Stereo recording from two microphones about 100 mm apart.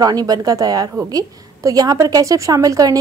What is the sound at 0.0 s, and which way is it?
Speech, 40° right (ahead or behind).